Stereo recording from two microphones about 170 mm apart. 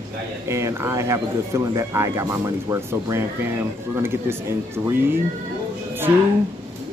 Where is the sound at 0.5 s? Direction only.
15° right (ahead or behind).